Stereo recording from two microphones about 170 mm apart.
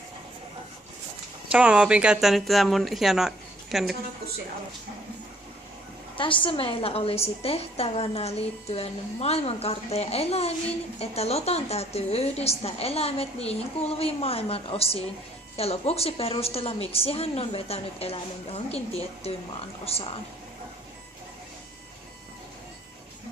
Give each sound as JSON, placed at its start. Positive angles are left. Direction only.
{"t": 1.5, "sound": "speech", "side_deg": -5}
{"t": 6.1, "sound": "a woman's voice", "side_deg": 30}